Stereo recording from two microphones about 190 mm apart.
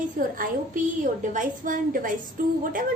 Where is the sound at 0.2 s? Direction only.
45° right (ahead or behind).